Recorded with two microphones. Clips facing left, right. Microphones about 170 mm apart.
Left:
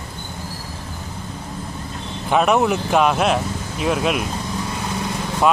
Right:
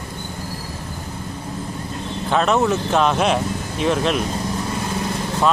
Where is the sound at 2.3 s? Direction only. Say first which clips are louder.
Left 1 dB; 10° left (ahead or behind).